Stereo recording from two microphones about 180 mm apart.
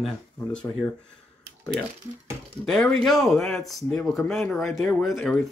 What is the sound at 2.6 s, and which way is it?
Speech, centre (ahead or behind).